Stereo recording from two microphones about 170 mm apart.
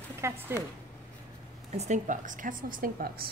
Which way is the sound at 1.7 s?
45° right (ahead or behind).